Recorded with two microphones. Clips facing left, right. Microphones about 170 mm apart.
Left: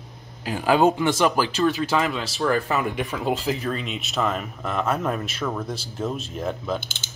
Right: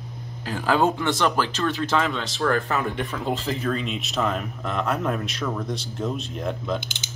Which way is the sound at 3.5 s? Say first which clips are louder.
Even; centre (ahead or behind).